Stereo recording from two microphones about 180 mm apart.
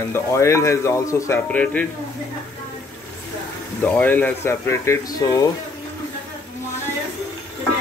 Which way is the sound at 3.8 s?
10° left (ahead or behind).